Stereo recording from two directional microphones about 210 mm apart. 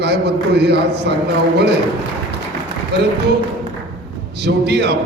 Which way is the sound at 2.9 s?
50° right (ahead or behind).